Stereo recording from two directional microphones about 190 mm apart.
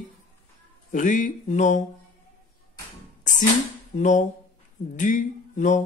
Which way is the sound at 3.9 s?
40° left (ahead or behind).